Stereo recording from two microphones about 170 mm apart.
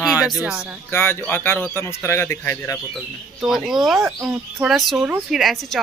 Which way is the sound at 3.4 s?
Centre (ahead or behind).